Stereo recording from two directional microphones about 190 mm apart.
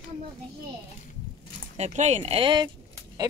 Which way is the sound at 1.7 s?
35° right (ahead or behind).